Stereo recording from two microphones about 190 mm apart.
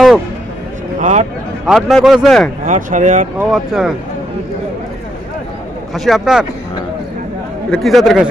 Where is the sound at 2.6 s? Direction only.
40° right (ahead or behind).